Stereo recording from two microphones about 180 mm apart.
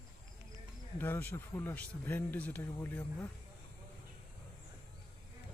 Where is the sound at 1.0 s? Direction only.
10° left (ahead or behind).